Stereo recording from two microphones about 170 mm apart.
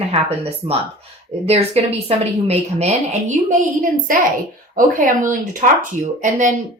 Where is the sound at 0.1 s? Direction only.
35° right (ahead or behind).